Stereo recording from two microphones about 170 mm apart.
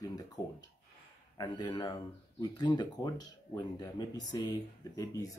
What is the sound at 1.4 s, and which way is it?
Speech, 25° left (ahead or behind).